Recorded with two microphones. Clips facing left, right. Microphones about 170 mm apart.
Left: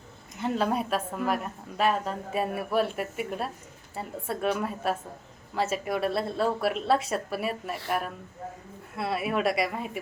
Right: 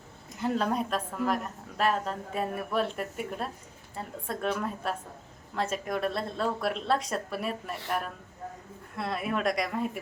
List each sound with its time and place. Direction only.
0.4 s a woman's voice: 5° left (ahead or behind)